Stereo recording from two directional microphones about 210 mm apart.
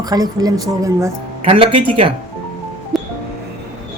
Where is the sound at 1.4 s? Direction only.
25° right (ahead or behind).